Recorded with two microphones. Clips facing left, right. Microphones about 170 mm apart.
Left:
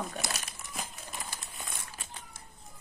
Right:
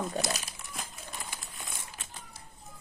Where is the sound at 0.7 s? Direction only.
Centre (ahead or behind).